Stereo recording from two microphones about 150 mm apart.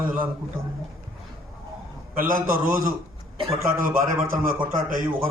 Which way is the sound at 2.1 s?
70° right (ahead or behind).